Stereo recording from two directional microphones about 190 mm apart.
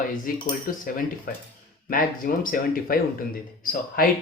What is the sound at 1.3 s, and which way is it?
A man's voice, 50° left (ahead or behind).